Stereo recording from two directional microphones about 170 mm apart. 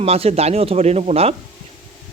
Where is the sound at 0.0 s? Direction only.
35° right (ahead or behind).